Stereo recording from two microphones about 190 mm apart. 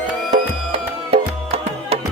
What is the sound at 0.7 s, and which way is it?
Music, 35° right (ahead or behind).